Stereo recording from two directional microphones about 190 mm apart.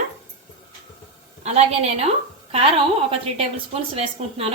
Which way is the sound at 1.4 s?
35° right (ahead or behind).